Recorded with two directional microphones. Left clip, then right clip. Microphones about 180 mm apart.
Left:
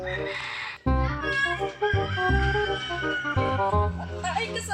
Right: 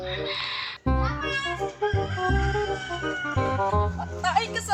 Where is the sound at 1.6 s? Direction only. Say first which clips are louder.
Left 1 dB; 5° left (ahead or behind).